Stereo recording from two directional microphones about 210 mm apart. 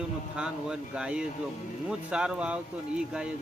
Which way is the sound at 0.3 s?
5° right (ahead or behind).